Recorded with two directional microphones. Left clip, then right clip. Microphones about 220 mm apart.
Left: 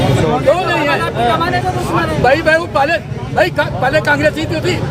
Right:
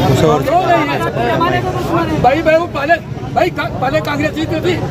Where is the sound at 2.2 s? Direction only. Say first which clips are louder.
Right 1 dB; 5° left (ahead or behind).